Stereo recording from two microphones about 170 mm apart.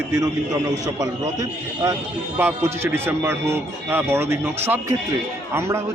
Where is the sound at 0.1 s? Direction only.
20° right (ahead or behind).